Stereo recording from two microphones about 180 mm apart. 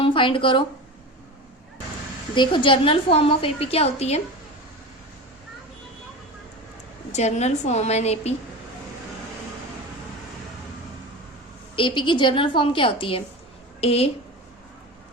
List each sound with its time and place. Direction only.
0.0 s speech: 30° left (ahead or behind)
2.3 s a woman's voice: 25° left (ahead or behind)
7.1 s a woman's voice: 40° left (ahead or behind)
11.8 s a woman's voice: 25° left (ahead or behind)